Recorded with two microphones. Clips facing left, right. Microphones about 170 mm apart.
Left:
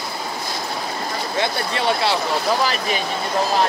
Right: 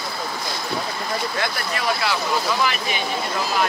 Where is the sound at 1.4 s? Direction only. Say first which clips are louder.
Left 3 dB; 25° left (ahead or behind).